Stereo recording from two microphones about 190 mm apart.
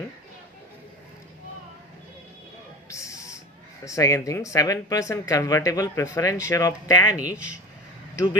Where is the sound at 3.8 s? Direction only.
15° left (ahead or behind).